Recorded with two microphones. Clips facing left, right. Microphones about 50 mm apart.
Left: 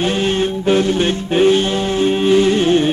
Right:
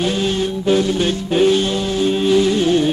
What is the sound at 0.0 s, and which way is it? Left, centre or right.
Music, left.